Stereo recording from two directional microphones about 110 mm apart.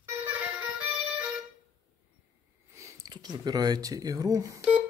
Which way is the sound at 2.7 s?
30° right (ahead or behind).